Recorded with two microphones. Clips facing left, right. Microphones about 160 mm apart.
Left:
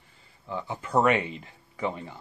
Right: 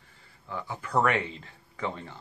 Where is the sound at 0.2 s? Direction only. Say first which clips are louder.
Left 3 dB; 20° left (ahead or behind).